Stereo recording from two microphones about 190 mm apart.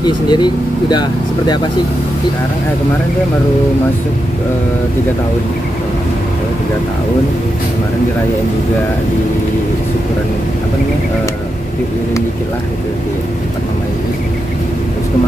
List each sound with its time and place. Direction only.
0.0 s speech: 25° left (ahead or behind)